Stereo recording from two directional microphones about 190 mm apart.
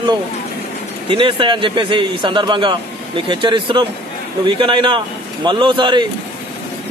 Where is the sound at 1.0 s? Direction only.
25° right (ahead or behind).